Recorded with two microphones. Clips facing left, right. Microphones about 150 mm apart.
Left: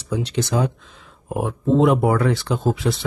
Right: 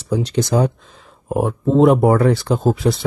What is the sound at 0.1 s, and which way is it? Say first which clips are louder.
Speech: right 4 dB; 40° right (ahead or behind).